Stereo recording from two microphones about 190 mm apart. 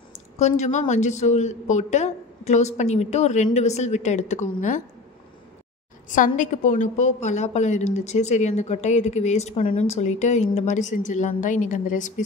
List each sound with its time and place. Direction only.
0.4 s a woman's voice: 35° left (ahead or behind)
6.0 s a woman's voice: 45° left (ahead or behind)